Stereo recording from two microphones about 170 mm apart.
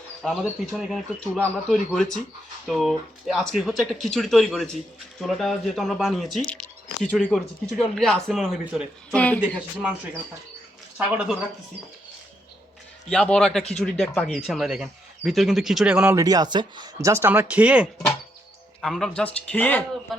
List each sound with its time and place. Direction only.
0.2 s a man's voice: 5° left (ahead or behind)
10.9 s speech: 5° right (ahead or behind)
13.1 s a man's voice: 5° left (ahead or behind)
16.1 s a man's voice: 20° right (ahead or behind); by 20.1 s 10° left (ahead or behind)